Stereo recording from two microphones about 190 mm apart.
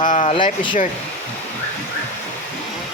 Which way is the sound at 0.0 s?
40° left (ahead or behind).